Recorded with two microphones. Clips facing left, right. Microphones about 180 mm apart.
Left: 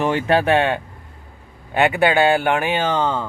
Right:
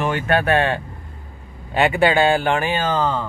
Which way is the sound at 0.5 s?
10° left (ahead or behind).